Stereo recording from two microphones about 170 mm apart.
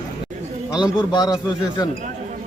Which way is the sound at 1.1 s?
25° left (ahead or behind).